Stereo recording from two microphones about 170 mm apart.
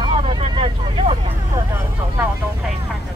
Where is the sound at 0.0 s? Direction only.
30° right (ahead or behind).